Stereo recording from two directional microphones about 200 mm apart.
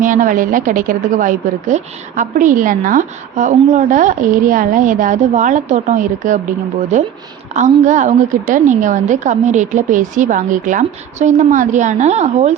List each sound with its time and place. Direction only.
0.0 s a woman's voice: 40° right (ahead or behind)